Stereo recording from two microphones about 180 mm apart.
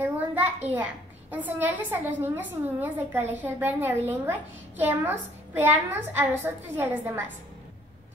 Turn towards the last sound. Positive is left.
turn(degrees=-10)  # may be behind; listen again after turning